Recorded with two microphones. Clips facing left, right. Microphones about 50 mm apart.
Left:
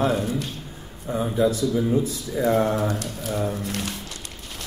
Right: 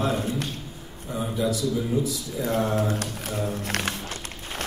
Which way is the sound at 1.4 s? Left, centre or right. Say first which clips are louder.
Left 4 dB; left.